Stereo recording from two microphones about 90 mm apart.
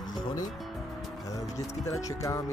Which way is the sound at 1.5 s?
40° left (ahead or behind).